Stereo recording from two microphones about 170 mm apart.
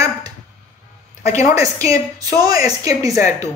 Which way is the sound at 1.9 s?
20° right (ahead or behind).